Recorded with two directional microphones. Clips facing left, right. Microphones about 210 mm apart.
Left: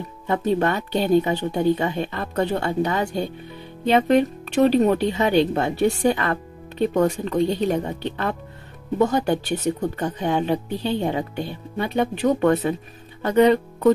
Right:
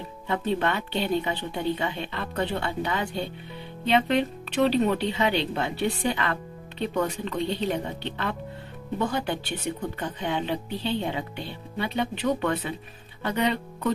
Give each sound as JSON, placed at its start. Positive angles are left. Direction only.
{"t": 0.3, "sound": "speech", "side_deg": 45}